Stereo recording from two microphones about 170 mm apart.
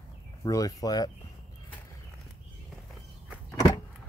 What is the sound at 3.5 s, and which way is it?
Power windows, 30° left (ahead or behind).